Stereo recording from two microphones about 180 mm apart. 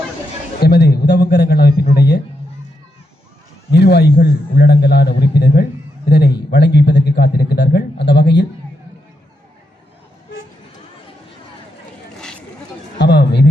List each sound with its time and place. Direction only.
0.6 s a man's voice: 60° left (ahead or behind)
3.7 s a man's voice: 65° left (ahead or behind)
13.0 s a sound: 70° left (ahead or behind)